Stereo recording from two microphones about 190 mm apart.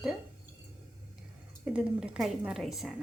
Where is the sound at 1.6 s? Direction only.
5° right (ahead or behind).